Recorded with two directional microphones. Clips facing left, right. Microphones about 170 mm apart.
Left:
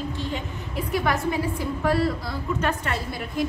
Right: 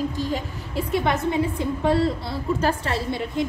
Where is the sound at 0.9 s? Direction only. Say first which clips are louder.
Right 2 dB; 25° right (ahead or behind).